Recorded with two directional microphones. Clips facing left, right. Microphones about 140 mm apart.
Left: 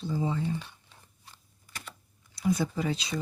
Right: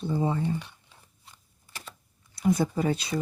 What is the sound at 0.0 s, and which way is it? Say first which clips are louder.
Speech: right 3 dB; 55° right (ahead or behind).